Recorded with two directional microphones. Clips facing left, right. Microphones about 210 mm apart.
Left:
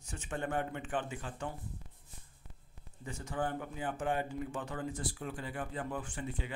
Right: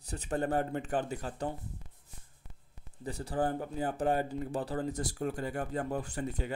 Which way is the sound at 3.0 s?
35° right (ahead or behind).